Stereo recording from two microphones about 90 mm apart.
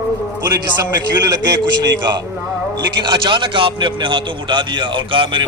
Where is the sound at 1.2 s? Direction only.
55° right (ahead or behind).